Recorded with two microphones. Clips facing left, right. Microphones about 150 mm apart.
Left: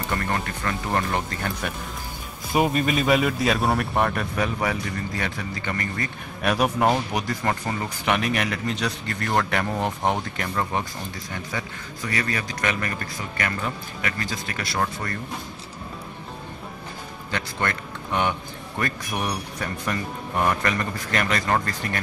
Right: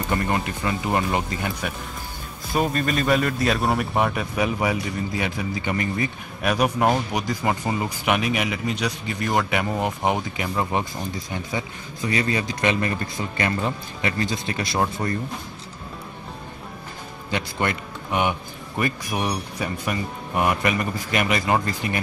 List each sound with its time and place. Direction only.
0.1 s speech: 15° right (ahead or behind)
2.5 s speech: 10° left (ahead or behind); by 6.0 s 15° right (ahead or behind)
6.4 s a man's voice: centre (ahead or behind); by 15.1 s 20° right (ahead or behind)
17.3 s a man's voice: 15° right (ahead or behind)